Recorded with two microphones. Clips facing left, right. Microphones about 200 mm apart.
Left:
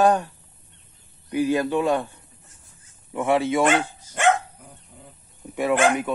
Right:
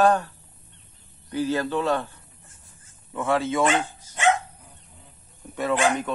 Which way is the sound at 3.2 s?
15° left (ahead or behind).